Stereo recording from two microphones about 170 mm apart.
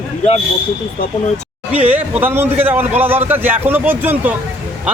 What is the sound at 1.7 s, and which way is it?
A man's voice, 10° right (ahead or behind).